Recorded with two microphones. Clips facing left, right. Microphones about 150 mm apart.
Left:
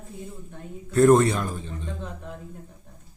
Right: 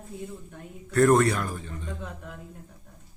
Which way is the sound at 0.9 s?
20° left (ahead or behind).